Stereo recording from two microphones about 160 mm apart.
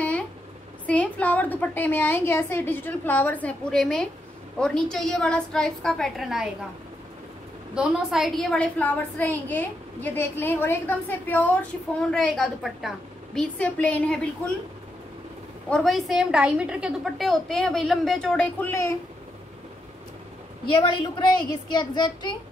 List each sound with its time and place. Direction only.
0.8 s a woman's voice: 10° left (ahead or behind)
7.7 s a woman's voice: 5° right (ahead or behind)
15.7 s a woman's voice: centre (ahead or behind)
20.7 s a woman's voice: 30° left (ahead or behind)